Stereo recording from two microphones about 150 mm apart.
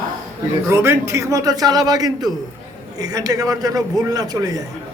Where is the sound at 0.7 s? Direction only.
15° right (ahead or behind).